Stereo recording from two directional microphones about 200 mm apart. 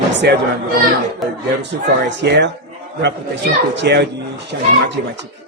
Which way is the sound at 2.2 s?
55° right (ahead or behind).